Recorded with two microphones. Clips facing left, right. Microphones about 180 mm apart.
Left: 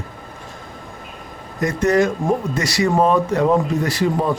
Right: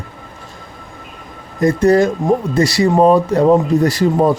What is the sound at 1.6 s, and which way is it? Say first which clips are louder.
A man's voice: right 5 dB; 35° right (ahead or behind).